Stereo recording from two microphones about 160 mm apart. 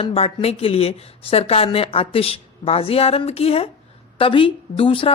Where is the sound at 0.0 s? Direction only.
35° left (ahead or behind).